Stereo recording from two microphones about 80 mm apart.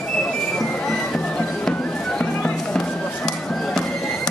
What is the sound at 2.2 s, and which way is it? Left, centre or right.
Music, centre.